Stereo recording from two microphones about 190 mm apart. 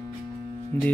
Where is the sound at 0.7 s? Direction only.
10° left (ahead or behind).